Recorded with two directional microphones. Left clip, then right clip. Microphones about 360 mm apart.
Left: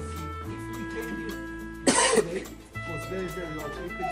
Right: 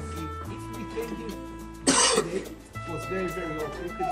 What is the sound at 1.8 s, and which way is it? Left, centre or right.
Cough, centre.